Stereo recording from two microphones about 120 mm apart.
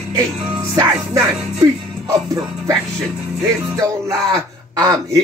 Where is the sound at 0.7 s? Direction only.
30° right (ahead or behind).